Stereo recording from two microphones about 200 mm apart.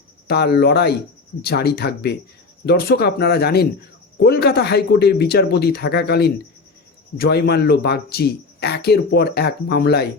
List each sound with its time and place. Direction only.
0.3 s speech: 55° left (ahead or behind)